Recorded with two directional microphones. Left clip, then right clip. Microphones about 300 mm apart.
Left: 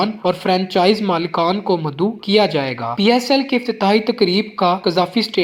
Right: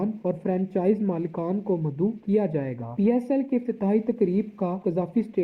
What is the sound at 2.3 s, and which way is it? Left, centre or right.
Speech, left.